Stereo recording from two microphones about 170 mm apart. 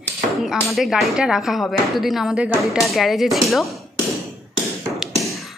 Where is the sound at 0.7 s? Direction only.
Centre (ahead or behind).